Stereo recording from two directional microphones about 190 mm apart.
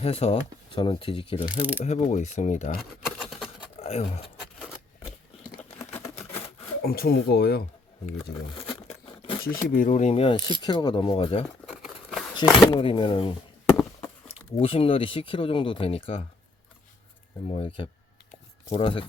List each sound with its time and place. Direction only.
0.0 s speech: 30° left (ahead or behind)
1.5 s speech: 10° right (ahead or behind)
1.8 s speech: 40° left (ahead or behind)
2.7 s a sound: centre (ahead or behind)
3.8 s speech: 30° left (ahead or behind)
5.8 s camera: 35° left (ahead or behind)
6.8 s speech: 55° left (ahead or behind)
8.5 s crumpling: 30° left (ahead or behind)
9.4 s speech: 50° left (ahead or behind); by 11.4 s 30° left (ahead or behind)
11.6 s a sound: centre (ahead or behind)
12.3 s speech: 25° left (ahead or behind)
17.5 s speech: 30° left (ahead or behind)